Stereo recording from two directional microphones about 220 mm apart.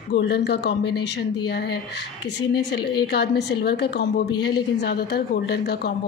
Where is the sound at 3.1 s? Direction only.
50° left (ahead or behind).